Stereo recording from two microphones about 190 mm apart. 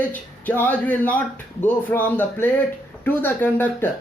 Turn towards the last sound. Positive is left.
turn(degrees=10)  # may be behind; listen again after turning